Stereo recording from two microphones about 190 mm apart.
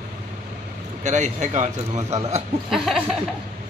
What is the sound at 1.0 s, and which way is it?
A man's voice, 40° right (ahead or behind).